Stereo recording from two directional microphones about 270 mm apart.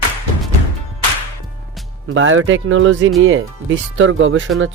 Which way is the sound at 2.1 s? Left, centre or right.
Right.